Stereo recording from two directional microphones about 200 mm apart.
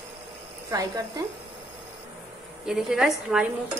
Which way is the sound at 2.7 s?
Centre (ahead or behind).